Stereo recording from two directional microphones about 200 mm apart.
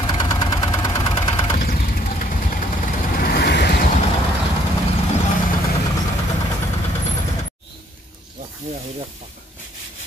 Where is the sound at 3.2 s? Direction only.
55° left (ahead or behind).